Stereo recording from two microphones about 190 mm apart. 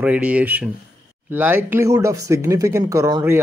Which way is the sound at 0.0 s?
5° right (ahead or behind).